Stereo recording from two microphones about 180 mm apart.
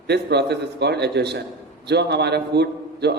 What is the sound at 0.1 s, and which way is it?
A man's voice, 70° right (ahead or behind).